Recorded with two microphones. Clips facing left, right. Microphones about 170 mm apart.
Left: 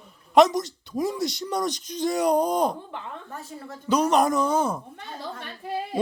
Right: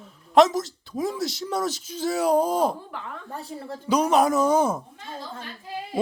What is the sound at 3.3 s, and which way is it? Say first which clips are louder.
Speech: right 3 dB; 30° right (ahead or behind).